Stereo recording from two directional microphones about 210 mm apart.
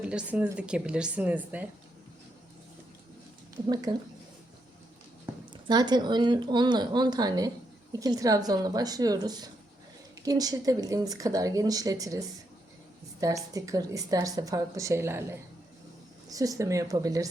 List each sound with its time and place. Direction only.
0.0 s a woman's voice: 5° right (ahead or behind)
3.7 s a woman's voice: 20° right (ahead or behind)
5.2 s a woman's voice: 20° right (ahead or behind)